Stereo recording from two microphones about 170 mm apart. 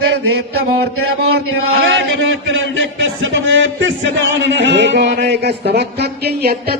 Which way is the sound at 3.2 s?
90° right.